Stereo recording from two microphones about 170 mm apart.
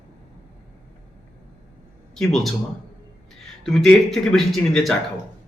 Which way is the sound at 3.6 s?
Centre (ahead or behind).